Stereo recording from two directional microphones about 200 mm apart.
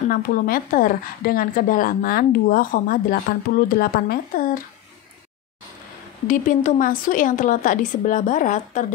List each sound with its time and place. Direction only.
0.1 s a woman's voice: 45° left (ahead or behind)
6.2 s speech: 40° left (ahead or behind)